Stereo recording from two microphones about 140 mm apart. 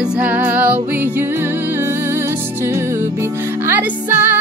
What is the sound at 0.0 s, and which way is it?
Music, 10° right (ahead or behind).